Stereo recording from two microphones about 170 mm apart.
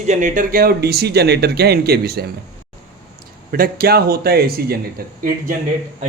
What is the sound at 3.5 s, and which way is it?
A man's voice, 60° right (ahead or behind).